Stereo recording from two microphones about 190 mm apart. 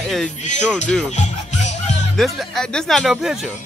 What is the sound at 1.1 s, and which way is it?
Music, 40° left (ahead or behind).